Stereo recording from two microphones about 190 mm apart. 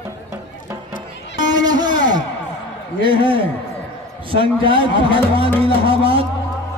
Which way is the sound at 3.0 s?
25° right (ahead or behind).